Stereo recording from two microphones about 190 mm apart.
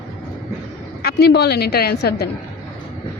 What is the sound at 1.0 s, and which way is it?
Speech, 55° left (ahead or behind).